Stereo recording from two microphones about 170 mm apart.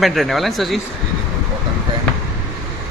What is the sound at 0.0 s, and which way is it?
Speech, centre (ahead or behind).